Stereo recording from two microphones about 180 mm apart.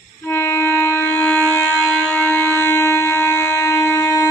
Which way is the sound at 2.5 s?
15° left (ahead or behind).